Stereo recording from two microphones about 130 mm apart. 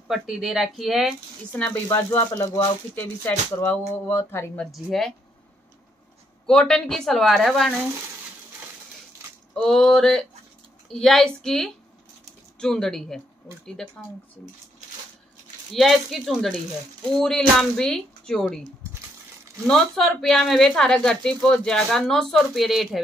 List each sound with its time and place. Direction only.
0.1 s speech: 5° right (ahead or behind)
1.6 s speech: 15° left (ahead or behind)
4.6 s speech: centre (ahead or behind)
6.4 s speech: 5° left (ahead or behind)
9.5 s speech: 5° left (ahead or behind)
15.7 s speech: centre (ahead or behind)
19.7 s speech: centre (ahead or behind)